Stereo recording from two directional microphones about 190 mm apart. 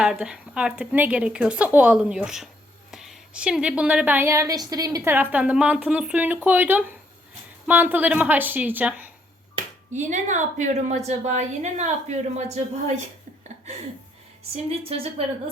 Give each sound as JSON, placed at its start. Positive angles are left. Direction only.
{"t": 0.0, "sound": "a woman's voice", "side_deg": -5}
{"t": 9.9, "sound": "a woman's voice", "side_deg": -40}
{"t": 14.5, "sound": "a woman's voice", "side_deg": -30}